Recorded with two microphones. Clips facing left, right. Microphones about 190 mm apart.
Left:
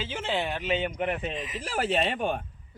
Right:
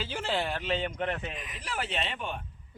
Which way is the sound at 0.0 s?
Centre (ahead or behind).